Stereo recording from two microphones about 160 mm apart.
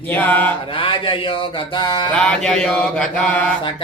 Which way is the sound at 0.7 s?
30° left (ahead or behind).